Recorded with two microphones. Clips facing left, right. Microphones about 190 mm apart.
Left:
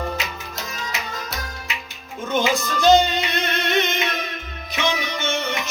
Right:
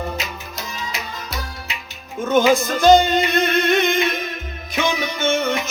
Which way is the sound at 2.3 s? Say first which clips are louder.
Right 6 dB; 50° right (ahead or behind).